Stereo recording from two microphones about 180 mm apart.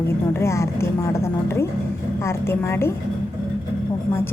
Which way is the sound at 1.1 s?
15° left (ahead or behind).